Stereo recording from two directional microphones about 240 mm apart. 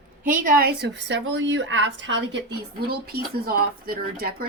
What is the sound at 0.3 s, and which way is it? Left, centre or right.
A woman's voice, right.